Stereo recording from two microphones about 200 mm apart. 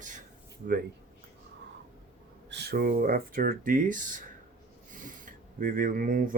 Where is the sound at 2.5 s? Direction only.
55° right (ahead or behind).